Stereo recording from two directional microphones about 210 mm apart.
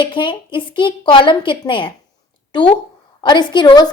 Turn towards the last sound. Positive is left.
turn(degrees=20)  # may be behind; listen again after turning